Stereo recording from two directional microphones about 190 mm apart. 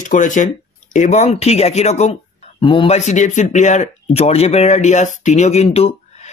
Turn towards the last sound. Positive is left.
turn(degrees=35)  # may be behind; listen again after turning